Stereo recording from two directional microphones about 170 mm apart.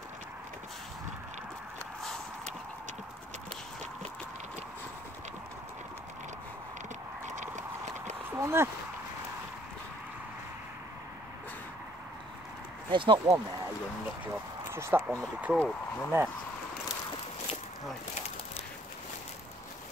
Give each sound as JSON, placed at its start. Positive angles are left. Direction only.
{"t": 2.0, "sound": "a sound", "side_deg": 5}
{"t": 7.2, "sound": "clip-clop", "side_deg": -45}
{"t": 8.4, "sound": "speech", "side_deg": -15}
{"t": 12.9, "sound": "speech", "side_deg": -30}
{"t": 14.2, "sound": "speech", "side_deg": -15}